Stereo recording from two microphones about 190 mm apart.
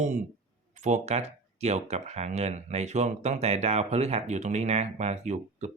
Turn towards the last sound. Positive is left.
turn(degrees=-40)  # may be behind; listen again after turning